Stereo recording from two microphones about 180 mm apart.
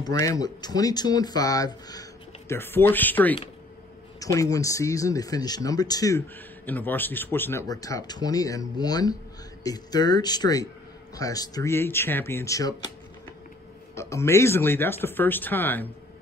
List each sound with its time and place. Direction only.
0.0 s speech: 20° left (ahead or behind)
13.9 s speech: 15° left (ahead or behind)